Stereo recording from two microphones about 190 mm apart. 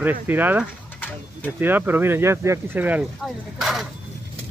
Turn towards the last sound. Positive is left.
turn(degrees=0)  # may be behind; listen again after turning